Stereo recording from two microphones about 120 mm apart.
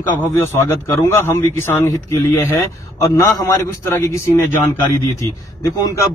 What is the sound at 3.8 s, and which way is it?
Speech, 25° left (ahead or behind).